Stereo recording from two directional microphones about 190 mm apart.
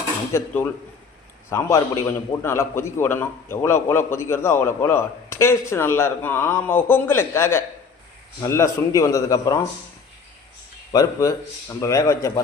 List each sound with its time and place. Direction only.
0.3 s a man's voice: 10° left (ahead or behind)
10.9 s a man's voice: 15° left (ahead or behind)